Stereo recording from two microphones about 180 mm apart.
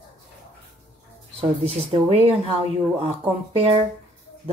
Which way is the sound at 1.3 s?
35° right (ahead or behind).